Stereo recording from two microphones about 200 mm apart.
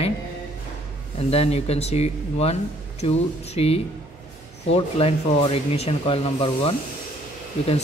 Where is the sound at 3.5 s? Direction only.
30° left (ahead or behind).